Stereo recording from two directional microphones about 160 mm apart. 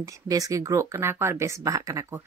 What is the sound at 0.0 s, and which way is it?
Speech, 20° right (ahead or behind).